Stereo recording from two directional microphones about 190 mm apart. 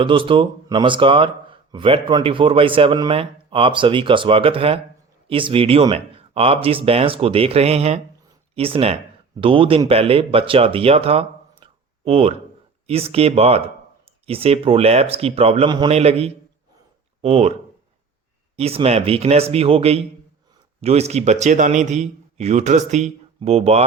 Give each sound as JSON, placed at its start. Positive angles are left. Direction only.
{"t": 0.0, "sound": "a man's voice", "side_deg": -25}
{"t": 18.5, "sound": "a man's voice", "side_deg": -35}